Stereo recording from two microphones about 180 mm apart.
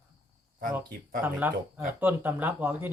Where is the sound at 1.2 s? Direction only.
10° right (ahead or behind).